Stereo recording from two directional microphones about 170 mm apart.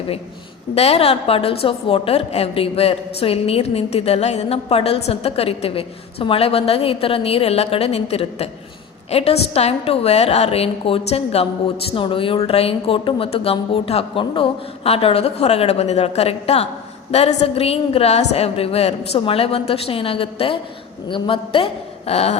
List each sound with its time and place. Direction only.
0.8 s a woman's voice: 35° left (ahead or behind)